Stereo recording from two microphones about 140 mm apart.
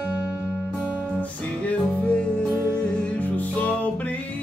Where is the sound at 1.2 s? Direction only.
10° left (ahead or behind).